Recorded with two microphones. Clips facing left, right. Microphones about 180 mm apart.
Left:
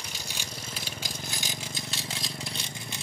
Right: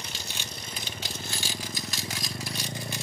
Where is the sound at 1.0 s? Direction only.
15° left (ahead or behind).